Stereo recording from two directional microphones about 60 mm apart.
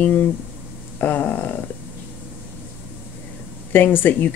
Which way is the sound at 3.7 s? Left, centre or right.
Left.